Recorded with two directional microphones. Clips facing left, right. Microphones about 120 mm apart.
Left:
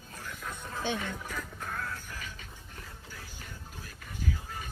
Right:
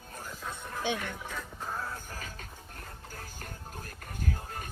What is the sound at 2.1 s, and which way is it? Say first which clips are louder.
Music: right 1 dB; 40° right (ahead or behind).